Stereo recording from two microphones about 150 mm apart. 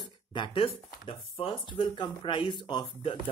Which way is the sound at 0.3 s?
35° left (ahead or behind).